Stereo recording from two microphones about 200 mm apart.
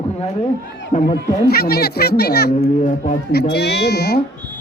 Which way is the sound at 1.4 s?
50° left (ahead or behind).